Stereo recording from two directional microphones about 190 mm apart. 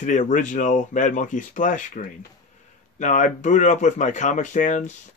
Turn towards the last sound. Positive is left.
turn(degrees=40)  # may be behind; listen again after turning